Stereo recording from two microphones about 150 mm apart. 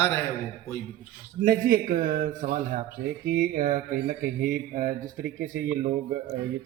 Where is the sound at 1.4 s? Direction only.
70° right (ahead or behind).